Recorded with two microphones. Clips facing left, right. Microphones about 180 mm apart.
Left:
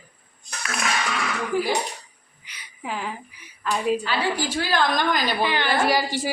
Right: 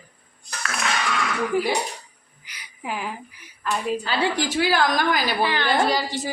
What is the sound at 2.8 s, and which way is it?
Speech, 5° right (ahead or behind).